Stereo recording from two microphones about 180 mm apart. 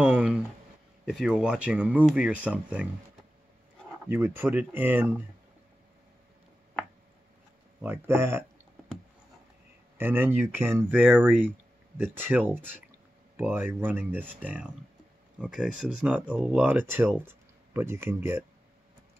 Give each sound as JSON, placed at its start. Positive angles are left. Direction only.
{"t": 0.0, "sound": "a sound", "side_deg": -10}
{"t": 1.0, "sound": "speech", "side_deg": -5}
{"t": 4.1, "sound": "speech", "side_deg": -10}
{"t": 7.8, "sound": "speech", "side_deg": -15}
{"t": 9.9, "sound": "speech", "side_deg": -10}